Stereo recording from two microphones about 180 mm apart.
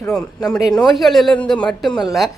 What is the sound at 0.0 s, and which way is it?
Speech, 5° left (ahead or behind).